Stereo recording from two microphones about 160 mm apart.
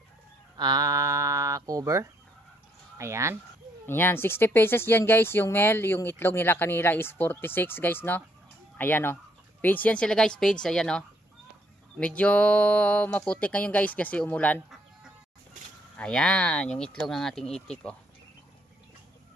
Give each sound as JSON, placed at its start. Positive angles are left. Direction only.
{"t": 0.6, "sound": "speech", "side_deg": -25}
{"t": 3.8, "sound": "speech", "side_deg": 15}
{"t": 16.0, "sound": "speech", "side_deg": 5}